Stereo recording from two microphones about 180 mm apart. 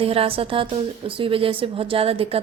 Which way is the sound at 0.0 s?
30° right (ahead or behind).